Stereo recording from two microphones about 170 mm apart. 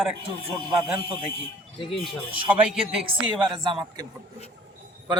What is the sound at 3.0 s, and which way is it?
Speech, 30° right (ahead or behind).